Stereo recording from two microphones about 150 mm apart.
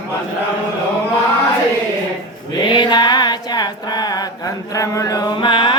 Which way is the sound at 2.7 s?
30° left (ahead or behind).